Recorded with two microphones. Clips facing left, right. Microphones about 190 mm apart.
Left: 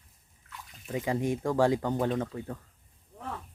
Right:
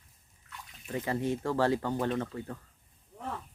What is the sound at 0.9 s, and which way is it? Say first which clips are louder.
Speech: left 2 dB; 15° left (ahead or behind).